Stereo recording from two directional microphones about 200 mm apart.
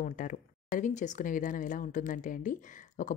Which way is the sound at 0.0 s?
40° left (ahead or behind).